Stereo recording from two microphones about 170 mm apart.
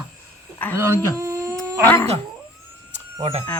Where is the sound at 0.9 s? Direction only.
15° right (ahead or behind).